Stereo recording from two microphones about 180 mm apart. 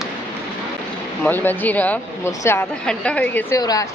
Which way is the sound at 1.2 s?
10° left (ahead or behind).